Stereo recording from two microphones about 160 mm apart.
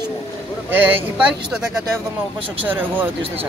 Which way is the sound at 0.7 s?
10° right (ahead or behind).